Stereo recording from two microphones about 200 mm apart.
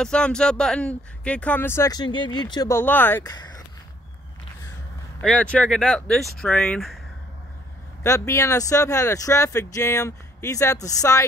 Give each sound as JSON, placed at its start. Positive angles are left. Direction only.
{"t": 0.0, "sound": "speech", "side_deg": 5}
{"t": 2.8, "sound": "speech", "side_deg": 10}
{"t": 5.2, "sound": "speech", "side_deg": 5}
{"t": 8.0, "sound": "speech", "side_deg": 15}